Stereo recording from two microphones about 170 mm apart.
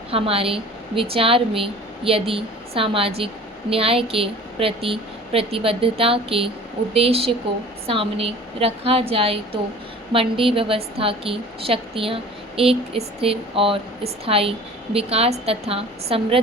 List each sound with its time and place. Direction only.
0.1 s a woman's voice: 35° right (ahead or behind)